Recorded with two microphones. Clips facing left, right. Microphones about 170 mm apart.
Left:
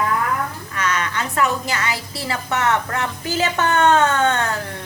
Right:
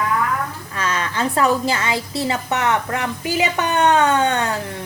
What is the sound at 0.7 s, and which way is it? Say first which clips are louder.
A woman's voice: even; 30° right (ahead or behind).